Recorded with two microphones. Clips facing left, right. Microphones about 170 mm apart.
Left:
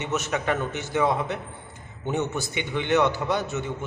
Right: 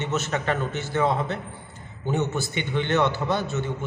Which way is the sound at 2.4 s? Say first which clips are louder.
Right 2 dB; 15° left (ahead or behind).